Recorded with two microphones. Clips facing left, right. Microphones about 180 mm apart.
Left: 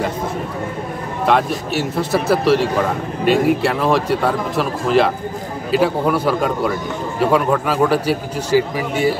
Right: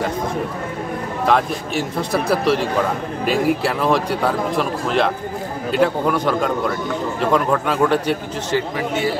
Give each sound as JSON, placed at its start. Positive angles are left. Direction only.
{"t": 1.2, "sound": "a man's voice", "side_deg": 0}